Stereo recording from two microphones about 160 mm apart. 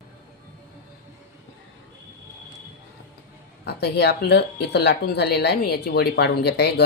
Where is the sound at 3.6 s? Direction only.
90° left.